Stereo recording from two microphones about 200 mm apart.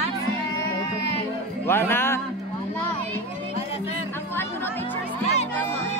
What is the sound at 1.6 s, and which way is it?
Speech, 10° left (ahead or behind).